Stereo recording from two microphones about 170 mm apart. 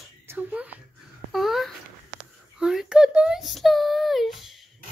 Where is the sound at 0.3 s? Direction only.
10° right (ahead or behind).